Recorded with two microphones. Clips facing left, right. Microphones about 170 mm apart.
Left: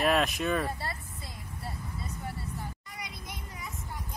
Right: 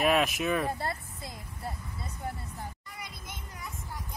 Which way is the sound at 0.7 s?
50° right (ahead or behind).